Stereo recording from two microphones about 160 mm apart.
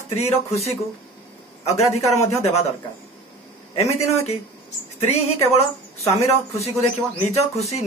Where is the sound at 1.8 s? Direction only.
40° left (ahead or behind).